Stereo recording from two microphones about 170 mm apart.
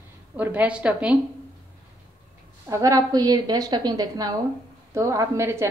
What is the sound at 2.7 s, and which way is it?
A woman's voice, 20° right (ahead or behind).